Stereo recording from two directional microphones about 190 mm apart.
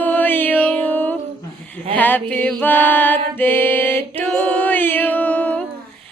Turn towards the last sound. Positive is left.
turn(degrees=10)  # may be behind; listen again after turning